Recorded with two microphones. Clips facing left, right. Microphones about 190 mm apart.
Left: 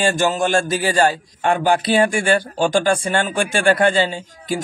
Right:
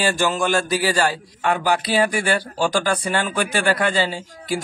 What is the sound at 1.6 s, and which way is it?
A man's voice, 25° left (ahead or behind).